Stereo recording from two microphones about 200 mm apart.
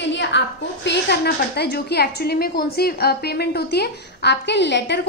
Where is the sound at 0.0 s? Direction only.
60° left (ahead or behind).